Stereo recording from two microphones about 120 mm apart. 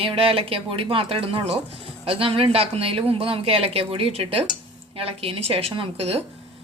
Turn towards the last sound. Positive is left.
turn(degrees=-55)  # may be behind; listen again after turning